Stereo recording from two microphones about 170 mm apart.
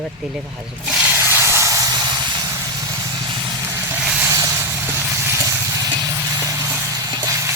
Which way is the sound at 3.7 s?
10° right (ahead or behind).